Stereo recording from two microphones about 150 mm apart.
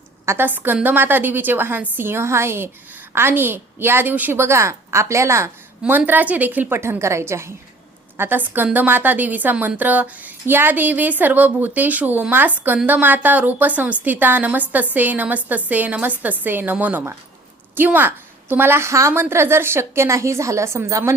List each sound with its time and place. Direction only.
0.3 s a woman's voice: 15° right (ahead or behind)